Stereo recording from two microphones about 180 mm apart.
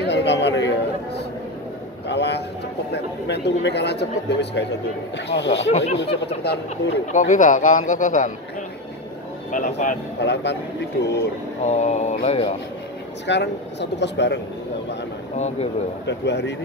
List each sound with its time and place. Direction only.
0.0 s chatter: 75° left (ahead or behind)
2.0 s a sound: 70° left (ahead or behind)
2.9 s speech: 70° left (ahead or behind)
5.6 s speech: 35° left (ahead or behind)
6.2 s speech: 65° left (ahead or behind)
7.1 s a man's voice: 45° left (ahead or behind)
9.5 s a man's voice: 45° left (ahead or behind)
10.2 s speech: 75° left (ahead or behind)
11.6 s speech: 40° left (ahead or behind)
13.3 s speech: 75° left (ahead or behind)
15.3 s speech: 40° left (ahead or behind)
16.1 s speech: 70° left (ahead or behind)